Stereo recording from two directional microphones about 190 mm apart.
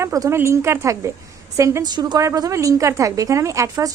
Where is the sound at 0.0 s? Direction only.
15° right (ahead or behind).